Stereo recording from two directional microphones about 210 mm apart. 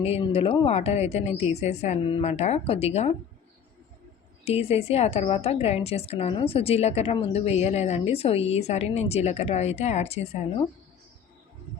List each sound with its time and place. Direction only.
0.0 s speech: 30° left (ahead or behind)
4.4 s a woman's voice: 30° left (ahead or behind)